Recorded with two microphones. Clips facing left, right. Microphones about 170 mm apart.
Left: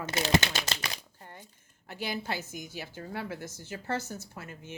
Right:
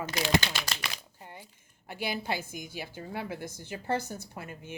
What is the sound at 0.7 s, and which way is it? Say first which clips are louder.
Speech: left 1 dB; 35° left (ahead or behind).